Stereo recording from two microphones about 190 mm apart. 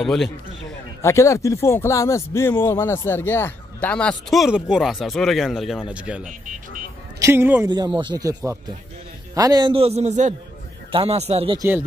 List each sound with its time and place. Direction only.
0.0 s speech: centre (ahead or behind)
1.0 s speech: 15° left (ahead or behind); by 6.2 s 5° right (ahead or behind)
7.2 s a man's voice: 10° right (ahead or behind)
7.7 s a man's voice: 25° right (ahead or behind)